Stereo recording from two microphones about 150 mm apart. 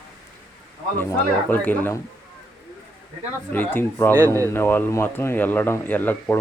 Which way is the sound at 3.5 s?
15° left (ahead or behind).